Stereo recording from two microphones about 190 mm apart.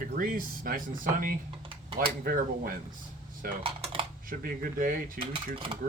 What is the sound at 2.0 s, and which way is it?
Speech, 50° right (ahead or behind).